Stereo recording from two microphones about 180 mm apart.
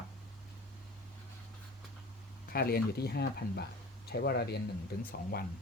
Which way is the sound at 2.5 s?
60° left (ahead or behind).